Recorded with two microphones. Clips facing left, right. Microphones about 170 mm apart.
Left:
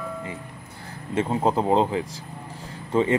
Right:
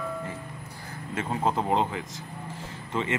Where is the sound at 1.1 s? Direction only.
25° left (ahead or behind).